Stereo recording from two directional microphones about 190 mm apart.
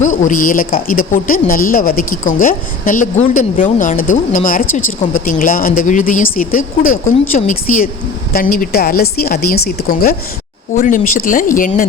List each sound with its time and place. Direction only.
0.2 s speech: 45° left (ahead or behind)
4.6 s speech: 90° left
5.2 s speech: 45° left (ahead or behind)